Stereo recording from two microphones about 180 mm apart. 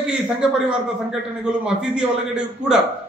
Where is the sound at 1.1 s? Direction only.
5° right (ahead or behind).